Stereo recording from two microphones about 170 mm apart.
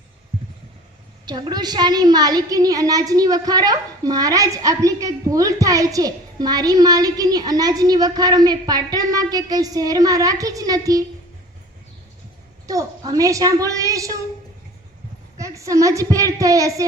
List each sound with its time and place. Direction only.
1.2 s a woman's voice: 25° right (ahead or behind)
12.6 s a woman's voice: 20° right (ahead or behind)
15.4 s a woman's voice: 20° right (ahead or behind)